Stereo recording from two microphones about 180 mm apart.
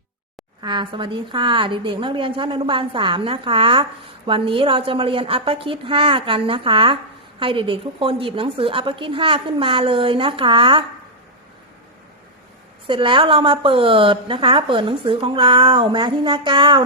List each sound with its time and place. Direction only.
0.6 s a woman's voice: 25° right (ahead or behind)
12.9 s a woman's voice: 30° right (ahead or behind)